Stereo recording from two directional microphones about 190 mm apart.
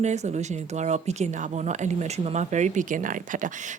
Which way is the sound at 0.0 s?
40° right (ahead or behind).